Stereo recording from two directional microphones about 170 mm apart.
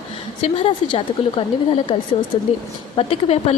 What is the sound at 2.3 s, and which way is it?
Speech, 30° left (ahead or behind).